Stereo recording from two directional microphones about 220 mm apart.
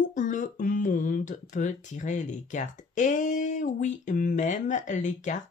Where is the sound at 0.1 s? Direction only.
35° left (ahead or behind).